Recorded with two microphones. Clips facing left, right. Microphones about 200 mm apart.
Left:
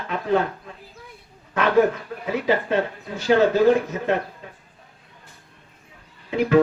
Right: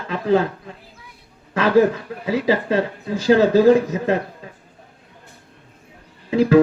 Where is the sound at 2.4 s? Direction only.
90° right.